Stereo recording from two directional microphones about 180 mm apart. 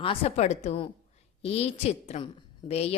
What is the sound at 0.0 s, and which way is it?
Speech, 30° left (ahead or behind).